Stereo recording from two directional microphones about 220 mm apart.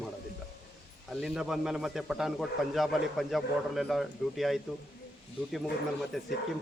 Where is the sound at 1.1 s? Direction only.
Centre (ahead or behind).